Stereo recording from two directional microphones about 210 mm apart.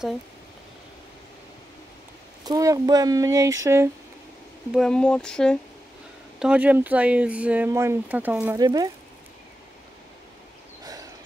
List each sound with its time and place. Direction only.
2.4 s speech: 15° right (ahead or behind)
4.7 s speech: 5° left (ahead or behind); by 8.9 s 20° right (ahead or behind)
10.8 s a sound: 15° right (ahead or behind)